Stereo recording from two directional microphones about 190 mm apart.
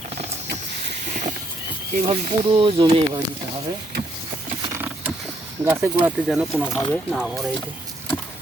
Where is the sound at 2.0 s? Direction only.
30° right (ahead or behind).